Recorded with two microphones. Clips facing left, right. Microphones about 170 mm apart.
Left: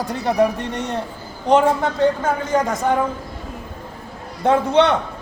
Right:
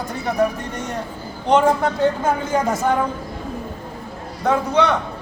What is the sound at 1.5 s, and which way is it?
Speech, 5° left (ahead or behind).